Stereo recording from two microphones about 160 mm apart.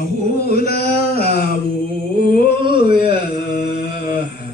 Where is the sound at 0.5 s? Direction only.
75° left (ahead or behind).